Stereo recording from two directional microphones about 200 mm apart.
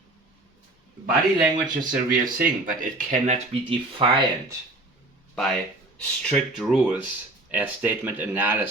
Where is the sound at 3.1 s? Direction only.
30° right (ahead or behind).